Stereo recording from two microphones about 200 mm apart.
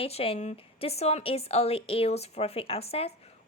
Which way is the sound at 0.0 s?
30° left (ahead or behind).